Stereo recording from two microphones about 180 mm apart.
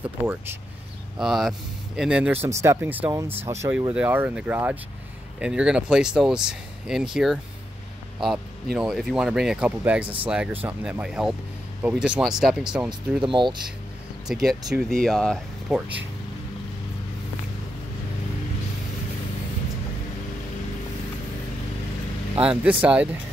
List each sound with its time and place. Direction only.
1.1 s speech: centre (ahead or behind)
8.7 s speech: centre (ahead or behind)
13.2 s speech: 25° right (ahead or behind)
14.2 s speech: centre (ahead or behind)
22.4 s speech: 5° right (ahead or behind)